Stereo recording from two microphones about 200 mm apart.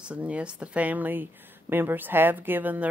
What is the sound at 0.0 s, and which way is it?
Speech, 5° right (ahead or behind).